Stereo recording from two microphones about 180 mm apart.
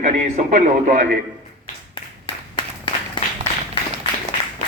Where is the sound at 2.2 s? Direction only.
25° left (ahead or behind).